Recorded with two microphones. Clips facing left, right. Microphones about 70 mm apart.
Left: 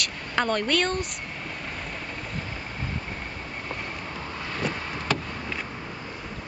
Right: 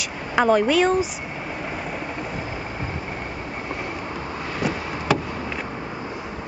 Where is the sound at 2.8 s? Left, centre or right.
Right.